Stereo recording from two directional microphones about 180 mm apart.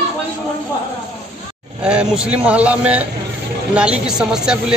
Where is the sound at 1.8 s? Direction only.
5° right (ahead or behind).